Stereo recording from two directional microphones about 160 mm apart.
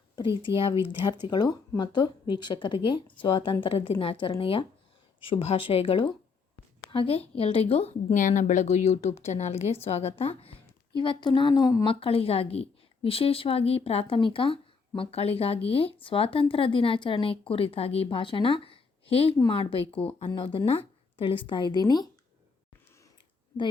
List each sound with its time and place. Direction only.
0.4 s speech: 35° left (ahead or behind)
11.9 s speech: 35° left (ahead or behind)